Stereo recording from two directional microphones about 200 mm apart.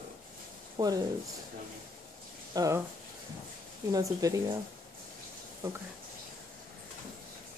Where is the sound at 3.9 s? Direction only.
15° right (ahead or behind).